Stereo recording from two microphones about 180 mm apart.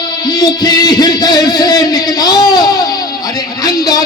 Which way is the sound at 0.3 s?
20° left (ahead or behind).